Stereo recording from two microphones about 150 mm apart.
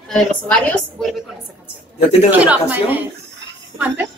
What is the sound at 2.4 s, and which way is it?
Speech, 10° right (ahead or behind).